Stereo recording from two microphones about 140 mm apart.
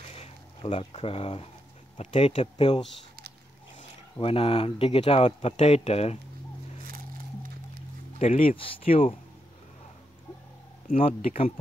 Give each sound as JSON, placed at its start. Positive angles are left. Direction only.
{"t": 0.1, "sound": "a sound", "side_deg": 45}
{"t": 2.0, "sound": "speech", "side_deg": 55}
{"t": 4.2, "sound": "speech", "side_deg": 40}
{"t": 8.4, "sound": "speech", "side_deg": 40}
{"t": 11.0, "sound": "speech", "side_deg": 45}